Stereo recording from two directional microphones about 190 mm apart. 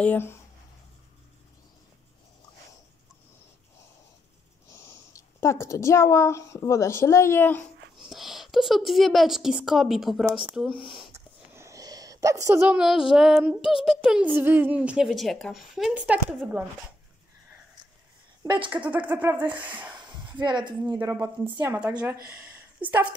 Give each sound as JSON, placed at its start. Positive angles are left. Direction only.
{"t": 0.0, "sound": "speech", "side_deg": 10}
{"t": 4.7, "sound": "speech", "side_deg": 15}
{"t": 8.0, "sound": "speech", "side_deg": 0}
{"t": 11.1, "sound": "a sound", "side_deg": -15}
{"t": 13.8, "sound": "speech", "side_deg": -5}
{"t": 18.4, "sound": "speech", "side_deg": -25}
{"t": 18.7, "sound": "speech", "side_deg": -10}
{"t": 20.0, "sound": "speech", "side_deg": -25}
{"t": 22.3, "sound": "a sound", "side_deg": -10}
{"t": 22.8, "sound": "a woman's voice", "side_deg": -25}